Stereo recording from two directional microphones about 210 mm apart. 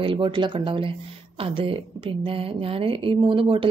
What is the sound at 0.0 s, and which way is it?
A woman's voice, 25° right (ahead or behind).